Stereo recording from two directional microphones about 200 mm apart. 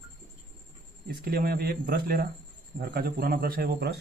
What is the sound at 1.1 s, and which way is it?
Speech, 50° right (ahead or behind).